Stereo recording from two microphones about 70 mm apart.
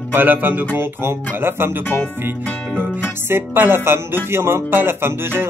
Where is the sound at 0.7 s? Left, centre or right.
Right.